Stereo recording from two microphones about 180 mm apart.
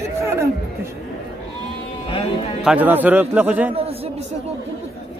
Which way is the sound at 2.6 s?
10° right (ahead or behind).